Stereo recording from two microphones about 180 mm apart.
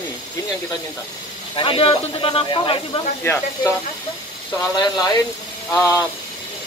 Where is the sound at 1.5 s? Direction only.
30° left (ahead or behind).